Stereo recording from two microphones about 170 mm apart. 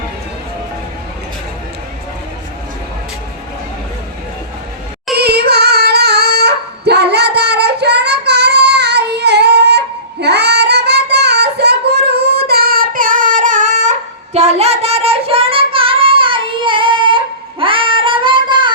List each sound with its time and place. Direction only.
5.1 s female singing: 70° right (ahead or behind); by 13.9 s 45° right (ahead or behind)
14.3 s child singing: 40° right (ahead or behind)